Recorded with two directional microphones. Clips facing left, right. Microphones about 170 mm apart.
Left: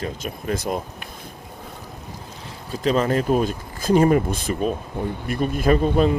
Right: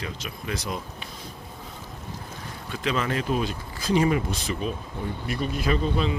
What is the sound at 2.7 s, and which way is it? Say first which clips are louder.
Speech: left 7 dB; 40° left (ahead or behind).